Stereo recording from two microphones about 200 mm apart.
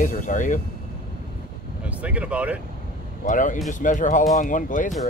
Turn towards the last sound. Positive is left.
turn(degrees=40)  # may be behind; listen again after turning